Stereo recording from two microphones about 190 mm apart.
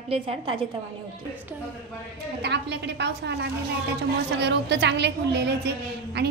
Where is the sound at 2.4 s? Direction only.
65° right (ahead or behind).